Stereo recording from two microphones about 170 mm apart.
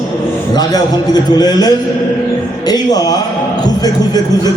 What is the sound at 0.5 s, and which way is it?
A man's voice, 25° left (ahead or behind).